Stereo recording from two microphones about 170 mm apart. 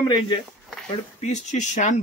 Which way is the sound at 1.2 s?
45° left (ahead or behind).